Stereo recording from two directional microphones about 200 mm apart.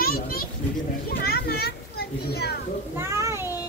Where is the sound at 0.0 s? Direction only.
50° left (ahead or behind).